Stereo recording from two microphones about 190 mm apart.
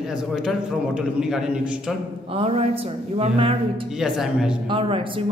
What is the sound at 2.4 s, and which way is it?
A man's voice, 30° right (ahead or behind).